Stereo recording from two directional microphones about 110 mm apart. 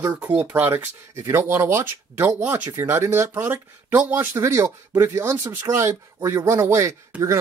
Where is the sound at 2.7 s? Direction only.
25° right (ahead or behind).